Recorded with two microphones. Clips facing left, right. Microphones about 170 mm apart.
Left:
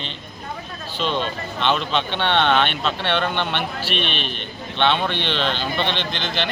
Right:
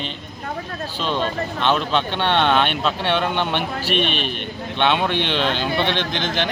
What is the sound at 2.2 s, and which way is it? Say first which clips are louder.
Speech: even; 10° right (ahead or behind).